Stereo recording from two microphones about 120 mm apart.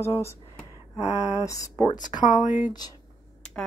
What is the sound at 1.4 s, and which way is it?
Speech, 30° left (ahead or behind).